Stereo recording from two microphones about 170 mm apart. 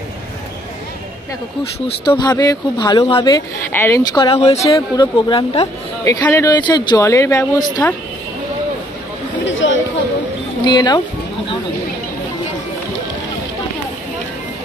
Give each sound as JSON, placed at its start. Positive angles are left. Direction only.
{"t": 1.6, "sound": "speech", "side_deg": 30}
{"t": 4.7, "sound": "speech", "side_deg": 20}
{"t": 5.3, "sound": "a woman's voice", "side_deg": 35}
{"t": 6.0, "sound": "speech", "side_deg": 20}
{"t": 9.5, "sound": "chatter", "side_deg": 90}
{"t": 10.6, "sound": "speech", "side_deg": 25}